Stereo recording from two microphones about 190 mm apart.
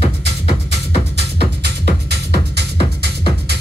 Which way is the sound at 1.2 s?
60° right (ahead or behind).